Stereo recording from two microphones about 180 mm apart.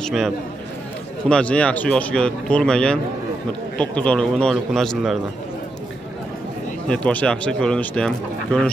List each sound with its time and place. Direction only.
0.0 s speech: centre (ahead or behind)
1.3 s speech: 5° left (ahead or behind)
6.9 s speech: 5° left (ahead or behind)